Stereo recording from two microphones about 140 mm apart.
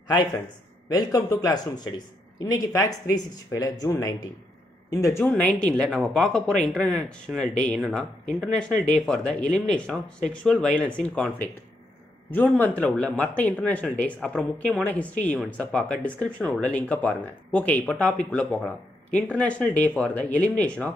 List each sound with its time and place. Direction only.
0.8 s speech: 25° left (ahead or behind)
5.2 s a woman's voice: 5° left (ahead or behind)
12.8 s a woman's voice: 5° left (ahead or behind)